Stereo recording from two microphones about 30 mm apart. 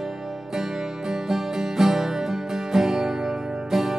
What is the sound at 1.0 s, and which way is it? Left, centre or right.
Music, centre.